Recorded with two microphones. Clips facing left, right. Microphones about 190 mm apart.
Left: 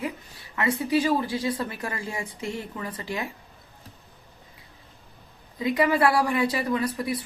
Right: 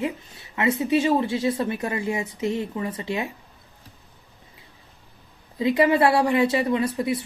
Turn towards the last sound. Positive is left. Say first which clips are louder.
# right 3 dB
turn(degrees=-25)  # may be behind; listen again after turning